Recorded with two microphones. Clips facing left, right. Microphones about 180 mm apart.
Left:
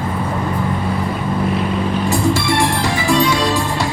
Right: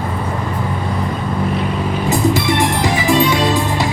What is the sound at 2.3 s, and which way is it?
Music, 20° right (ahead or behind).